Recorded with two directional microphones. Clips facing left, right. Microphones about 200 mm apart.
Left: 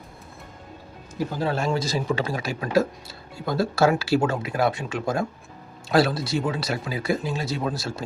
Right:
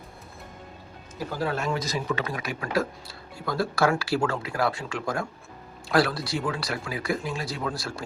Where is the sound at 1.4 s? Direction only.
30° left (ahead or behind).